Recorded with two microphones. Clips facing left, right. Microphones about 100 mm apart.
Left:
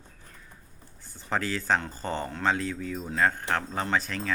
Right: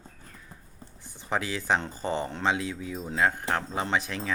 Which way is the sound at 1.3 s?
15° right (ahead or behind).